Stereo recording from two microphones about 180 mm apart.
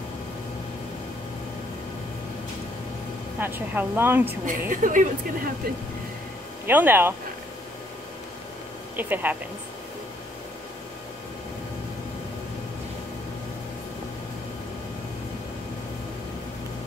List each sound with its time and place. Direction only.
3.3 s a woman's voice: 10° right (ahead or behind)
4.5 s a woman's voice: 45° right (ahead or behind)
6.6 s a woman's voice: 10° right (ahead or behind)
8.9 s a woman's voice: 10° right (ahead or behind)